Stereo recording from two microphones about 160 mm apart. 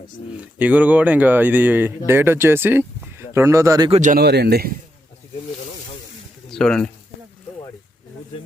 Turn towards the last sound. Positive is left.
turn(degrees=5)  # may be behind; listen again after turning